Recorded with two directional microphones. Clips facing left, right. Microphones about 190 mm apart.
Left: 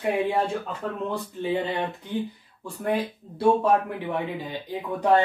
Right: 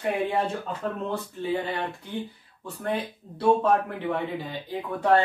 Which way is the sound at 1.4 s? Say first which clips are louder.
Left 3 dB; 20° left (ahead or behind).